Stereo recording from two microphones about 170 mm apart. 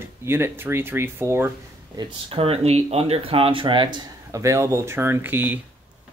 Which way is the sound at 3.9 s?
20° right (ahead or behind).